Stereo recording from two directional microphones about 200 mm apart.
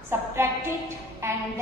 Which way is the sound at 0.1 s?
15° right (ahead or behind).